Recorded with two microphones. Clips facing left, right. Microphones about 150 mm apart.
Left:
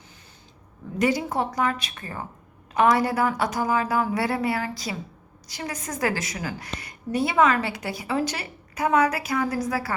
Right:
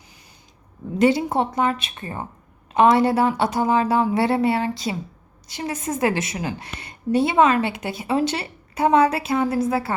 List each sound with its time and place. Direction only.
0.9 s a woman's voice: 25° right (ahead or behind)